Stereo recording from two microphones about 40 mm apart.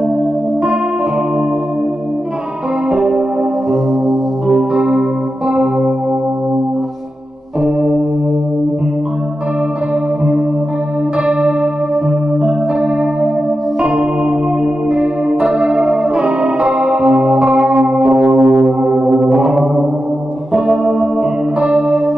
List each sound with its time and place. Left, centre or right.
2.9 s music: right
4.5 s music: centre
7.6 s organ: right
14.9 s music: right